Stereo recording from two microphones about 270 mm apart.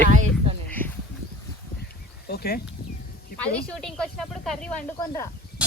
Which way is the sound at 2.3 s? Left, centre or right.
Left.